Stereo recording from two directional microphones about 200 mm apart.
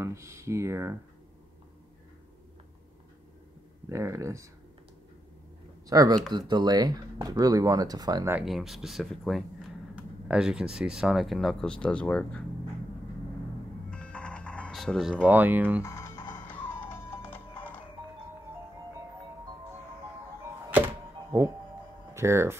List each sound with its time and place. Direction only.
0.0 s speech: 15° right (ahead or behind)
3.9 s speech: 15° right (ahead or behind)
5.9 s speech: 20° right (ahead or behind)
8.4 s speech: centre (ahead or behind)
13.8 s music: 5° left (ahead or behind)
15.8 s music: 15° left (ahead or behind)
20.7 s music: 10° right (ahead or behind)
22.1 s speech: 15° right (ahead or behind)